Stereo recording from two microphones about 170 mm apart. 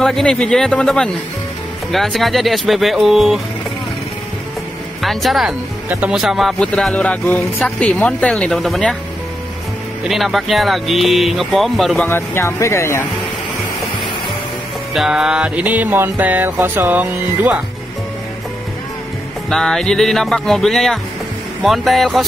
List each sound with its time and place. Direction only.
0.0 s speech: centre (ahead or behind)
5.0 s speech: centre (ahead or behind)
10.0 s speech: centre (ahead or behind)
12.1 s speech: 15° left (ahead or behind)
15.0 s music: 5° right (ahead or behind)
19.5 s speech: centre (ahead or behind)